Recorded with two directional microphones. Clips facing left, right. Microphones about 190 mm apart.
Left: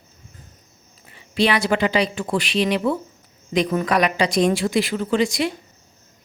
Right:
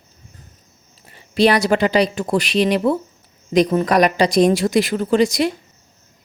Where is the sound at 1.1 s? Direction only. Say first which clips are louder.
Right 5 dB; 40° right (ahead or behind).